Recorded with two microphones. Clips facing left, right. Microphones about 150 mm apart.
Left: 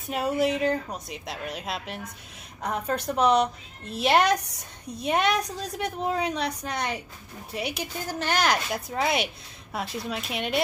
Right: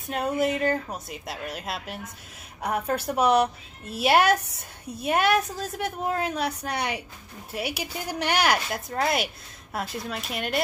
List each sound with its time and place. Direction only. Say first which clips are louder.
0.1 s a woman's voice: even; centre (ahead or behind)
4.4 s a woman's voice: right 1 dB; 70° left (ahead or behind)
4.8 s a woman's voice: right 1 dB; 5° right (ahead or behind)